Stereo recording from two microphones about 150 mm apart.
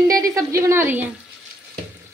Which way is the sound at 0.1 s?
25° right (ahead or behind).